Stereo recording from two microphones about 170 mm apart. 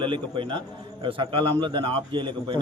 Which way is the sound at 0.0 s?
30° right (ahead or behind).